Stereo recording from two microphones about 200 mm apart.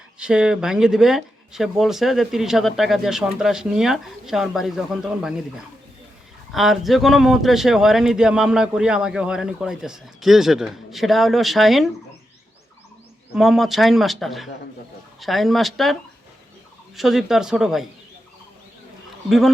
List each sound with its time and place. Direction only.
0.2 s speech: 5° right (ahead or behind)
6.5 s speech: centre (ahead or behind)
13.3 s speech: centre (ahead or behind)
17.0 s speech: centre (ahead or behind)